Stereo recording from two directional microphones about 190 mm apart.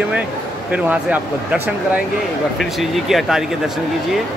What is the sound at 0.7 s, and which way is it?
Speech, 10° right (ahead or behind).